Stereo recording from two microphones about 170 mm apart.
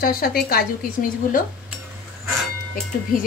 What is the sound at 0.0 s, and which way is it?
Speech, 60° left (ahead or behind).